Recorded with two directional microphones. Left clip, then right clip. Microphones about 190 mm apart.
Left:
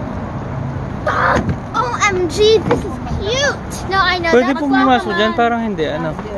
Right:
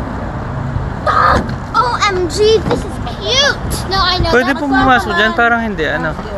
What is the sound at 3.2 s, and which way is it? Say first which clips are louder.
Vehicle: right 4 dB; 60° left (ahead or behind).